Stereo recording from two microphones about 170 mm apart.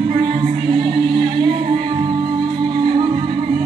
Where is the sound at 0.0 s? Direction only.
30° right (ahead or behind).